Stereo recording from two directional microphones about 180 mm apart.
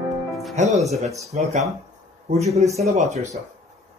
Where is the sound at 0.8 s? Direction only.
35° right (ahead or behind).